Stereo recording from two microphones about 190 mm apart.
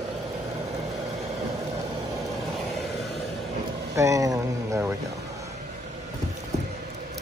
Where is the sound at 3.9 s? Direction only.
15° right (ahead or behind).